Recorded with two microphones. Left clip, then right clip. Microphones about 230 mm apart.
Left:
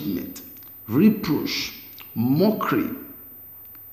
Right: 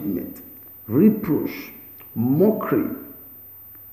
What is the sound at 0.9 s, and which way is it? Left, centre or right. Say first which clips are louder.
A man's voice: right 2 dB; centre.